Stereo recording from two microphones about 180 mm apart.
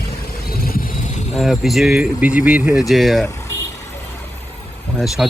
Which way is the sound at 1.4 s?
Centre (ahead or behind).